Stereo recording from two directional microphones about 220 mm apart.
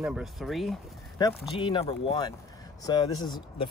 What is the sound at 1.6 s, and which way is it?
Speech, 25° left (ahead or behind).